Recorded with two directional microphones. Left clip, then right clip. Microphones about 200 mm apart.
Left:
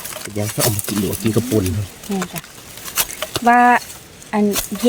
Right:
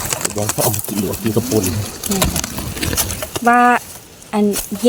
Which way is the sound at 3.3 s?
5° left (ahead or behind).